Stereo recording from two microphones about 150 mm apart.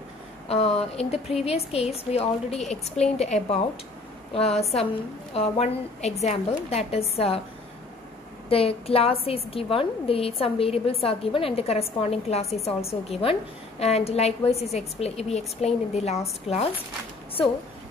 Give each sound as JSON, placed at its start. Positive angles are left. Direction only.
{"t": 0.5, "sound": "a woman's voice", "side_deg": 40}
{"t": 8.5, "sound": "a woman's voice", "side_deg": 40}